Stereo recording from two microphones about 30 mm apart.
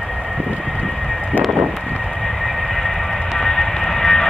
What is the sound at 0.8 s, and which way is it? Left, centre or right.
Vehicle, centre.